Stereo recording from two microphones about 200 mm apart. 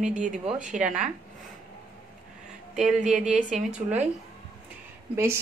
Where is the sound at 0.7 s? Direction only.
5° right (ahead or behind).